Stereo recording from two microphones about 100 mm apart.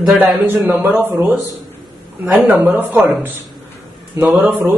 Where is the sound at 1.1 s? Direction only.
5° right (ahead or behind).